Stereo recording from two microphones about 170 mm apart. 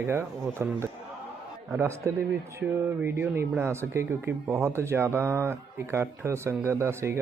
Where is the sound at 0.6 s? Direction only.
15° right (ahead or behind).